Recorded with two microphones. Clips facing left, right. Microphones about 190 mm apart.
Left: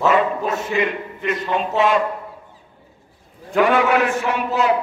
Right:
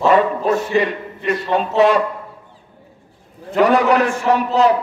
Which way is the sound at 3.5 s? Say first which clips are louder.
Right 2 dB; 40° right (ahead or behind).